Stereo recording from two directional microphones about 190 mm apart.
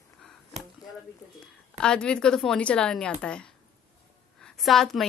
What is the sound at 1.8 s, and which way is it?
A woman's voice, 5° left (ahead or behind).